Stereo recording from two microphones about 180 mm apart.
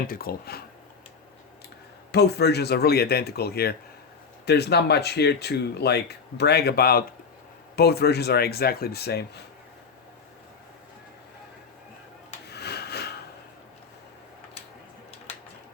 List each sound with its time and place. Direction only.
0.1 s speech: 55° left (ahead or behind)
2.1 s speech: 65° left (ahead or behind)
12.5 s a sound: 65° left (ahead or behind)